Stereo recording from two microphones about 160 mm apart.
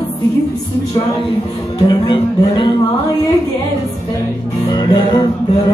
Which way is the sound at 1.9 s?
30° left (ahead or behind).